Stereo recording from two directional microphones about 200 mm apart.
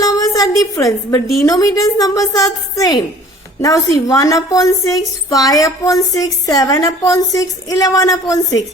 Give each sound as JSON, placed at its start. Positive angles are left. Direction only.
{"t": 0.0, "sound": "a woman's voice", "side_deg": 15}